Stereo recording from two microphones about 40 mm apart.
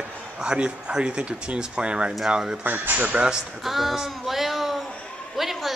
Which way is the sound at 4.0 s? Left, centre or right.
Centre.